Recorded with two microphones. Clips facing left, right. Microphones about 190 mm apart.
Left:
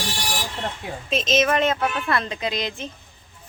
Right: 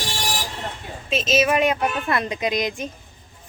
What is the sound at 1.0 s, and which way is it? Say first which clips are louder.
Speech: right 1 dB; 5° right (ahead or behind).